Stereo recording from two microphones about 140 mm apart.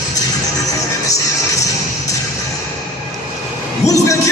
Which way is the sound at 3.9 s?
20° left (ahead or behind).